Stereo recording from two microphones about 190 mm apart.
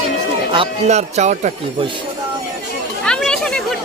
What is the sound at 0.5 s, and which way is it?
Speech, 30° right (ahead or behind).